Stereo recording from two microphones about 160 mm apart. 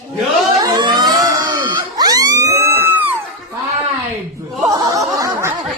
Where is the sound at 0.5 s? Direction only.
25° right (ahead or behind).